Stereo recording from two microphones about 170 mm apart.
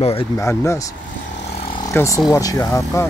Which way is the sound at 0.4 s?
15° left (ahead or behind).